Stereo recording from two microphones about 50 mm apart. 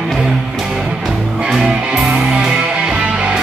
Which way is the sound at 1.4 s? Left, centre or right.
Centre.